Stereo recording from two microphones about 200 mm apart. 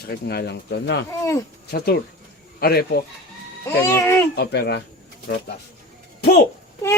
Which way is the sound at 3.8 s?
15° left (ahead or behind).